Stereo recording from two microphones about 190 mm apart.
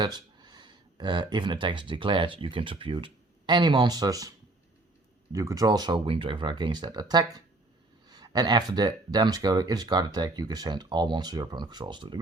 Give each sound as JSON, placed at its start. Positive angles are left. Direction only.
{"t": 0.0, "sound": "speech", "side_deg": -20}
{"t": 5.3, "sound": "speech", "side_deg": -15}